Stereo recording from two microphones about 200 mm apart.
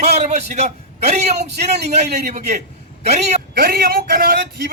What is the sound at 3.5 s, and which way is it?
A man's voice, 50° right (ahead or behind).